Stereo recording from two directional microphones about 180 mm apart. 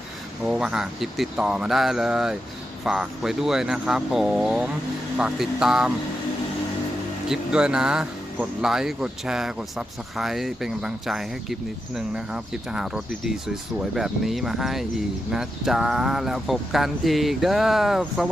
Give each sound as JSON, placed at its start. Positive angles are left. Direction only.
{"t": 0.4, "sound": "speech", "side_deg": -5}
{"t": 7.3, "sound": "speech", "side_deg": -5}